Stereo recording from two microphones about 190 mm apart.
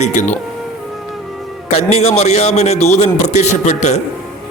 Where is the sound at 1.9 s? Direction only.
35° left (ahead or behind).